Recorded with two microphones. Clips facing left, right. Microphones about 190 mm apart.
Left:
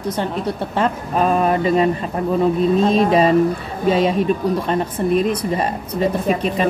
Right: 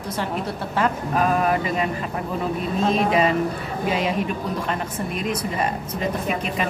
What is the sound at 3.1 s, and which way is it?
A woman's voice, 35° left (ahead or behind).